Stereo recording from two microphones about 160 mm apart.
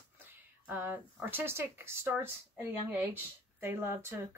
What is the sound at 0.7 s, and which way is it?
Speech, 10° right (ahead or behind).